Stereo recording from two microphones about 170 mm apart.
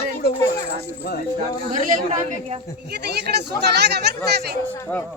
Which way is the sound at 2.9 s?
75° right (ahead or behind).